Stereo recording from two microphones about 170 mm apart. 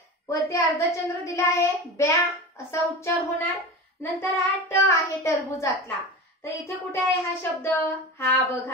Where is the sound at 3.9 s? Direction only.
15° left (ahead or behind).